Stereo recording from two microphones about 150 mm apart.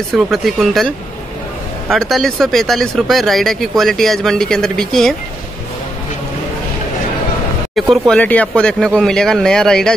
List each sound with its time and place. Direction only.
0.1 s speech: centre (ahead or behind)
8.1 s speech: 10° left (ahead or behind)